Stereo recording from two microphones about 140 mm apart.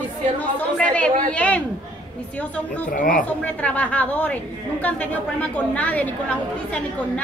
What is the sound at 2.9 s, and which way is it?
Speech, 70° left (ahead or behind).